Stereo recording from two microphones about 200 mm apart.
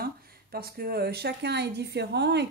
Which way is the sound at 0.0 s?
50° right (ahead or behind).